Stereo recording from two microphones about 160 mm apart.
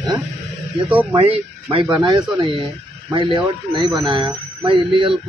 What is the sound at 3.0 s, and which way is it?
A man's voice, 30° right (ahead or behind).